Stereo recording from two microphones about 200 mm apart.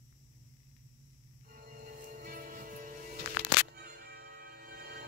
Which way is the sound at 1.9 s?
45° right (ahead or behind).